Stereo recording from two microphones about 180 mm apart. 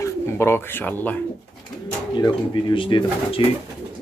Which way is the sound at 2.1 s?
25° left (ahead or behind).